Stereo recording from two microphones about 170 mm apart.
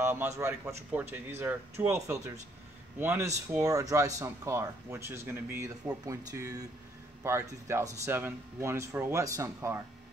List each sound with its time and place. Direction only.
0.0 s speech: 15° right (ahead or behind)